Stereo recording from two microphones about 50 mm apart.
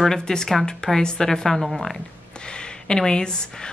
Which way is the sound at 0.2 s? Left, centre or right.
Centre.